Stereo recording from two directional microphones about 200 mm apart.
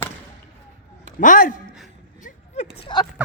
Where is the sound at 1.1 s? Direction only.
40° left (ahead or behind).